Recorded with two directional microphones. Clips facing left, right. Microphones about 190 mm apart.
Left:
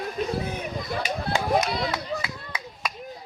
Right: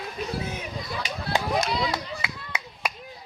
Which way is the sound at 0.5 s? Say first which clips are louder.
Left 3 dB; 55° left (ahead or behind).